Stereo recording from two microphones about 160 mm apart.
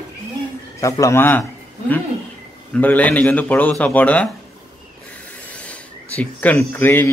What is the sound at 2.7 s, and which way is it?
Speech, 10° left (ahead or behind).